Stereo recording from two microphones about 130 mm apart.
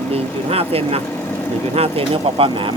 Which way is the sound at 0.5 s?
50° right (ahead or behind).